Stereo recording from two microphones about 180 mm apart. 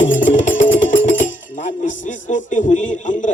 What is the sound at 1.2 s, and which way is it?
Music, 45° left (ahead or behind).